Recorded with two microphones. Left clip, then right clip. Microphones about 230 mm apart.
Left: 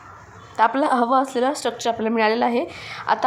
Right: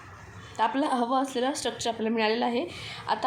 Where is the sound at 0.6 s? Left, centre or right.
Left.